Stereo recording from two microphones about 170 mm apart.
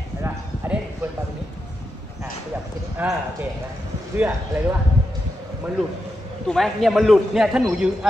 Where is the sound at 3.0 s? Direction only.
10° right (ahead or behind).